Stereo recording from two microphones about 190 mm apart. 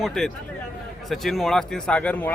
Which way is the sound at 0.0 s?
Centre (ahead or behind).